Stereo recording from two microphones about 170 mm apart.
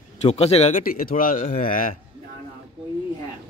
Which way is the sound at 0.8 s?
60° left (ahead or behind).